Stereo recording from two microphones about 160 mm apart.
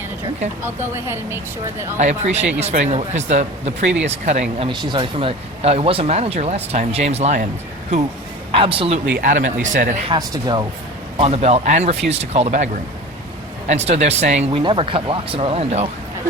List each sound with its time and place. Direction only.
0.6 s speech: 15° right (ahead or behind)
2.0 s speech: 45° right (ahead or behind)
4.7 s speech: 30° right (ahead or behind); by 7.4 s 45° right (ahead or behind)
8.5 s speech: 35° right (ahead or behind)
9.2 s speech: 55° right (ahead or behind)
10.1 s speech: 25° right (ahead or behind)
11.2 s speech: 40° right (ahead or behind)
14.6 s speech: 30° right (ahead or behind)